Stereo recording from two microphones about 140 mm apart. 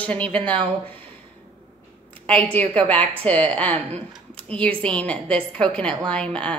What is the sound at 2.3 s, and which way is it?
A woman's voice, 10° left (ahead or behind).